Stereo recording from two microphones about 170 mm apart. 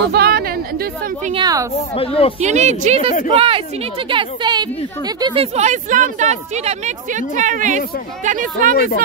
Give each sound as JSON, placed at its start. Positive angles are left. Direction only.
{"t": 0.1, "sound": "speech", "side_deg": -70}
{"t": 1.3, "sound": "a woman's voice", "side_deg": -20}
{"t": 2.0, "sound": "speech", "side_deg": 35}
{"t": 2.4, "sound": "speech", "side_deg": -45}
{"t": 3.1, "sound": "speech", "side_deg": 50}
{"t": 3.3, "sound": "a woman's voice", "side_deg": -35}
{"t": 8.7, "sound": "speech", "side_deg": 65}